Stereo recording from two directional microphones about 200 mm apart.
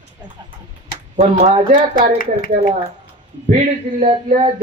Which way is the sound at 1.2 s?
35° right (ahead or behind).